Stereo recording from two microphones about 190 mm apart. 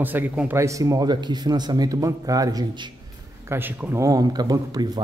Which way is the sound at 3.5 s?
10° right (ahead or behind).